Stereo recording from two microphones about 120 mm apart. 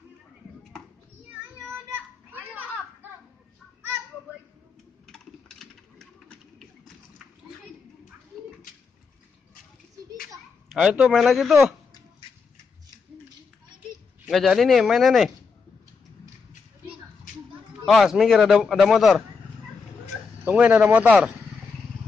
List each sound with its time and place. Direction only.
1.3 s children playing: 15° right (ahead or behind)
5.0 s coin: centre (ahead or behind)
10.7 s speech: 10° right (ahead or behind)
14.3 s speech: centre (ahead or behind)
17.8 s speech: centre (ahead or behind)
20.4 s speech: 10° right (ahead or behind)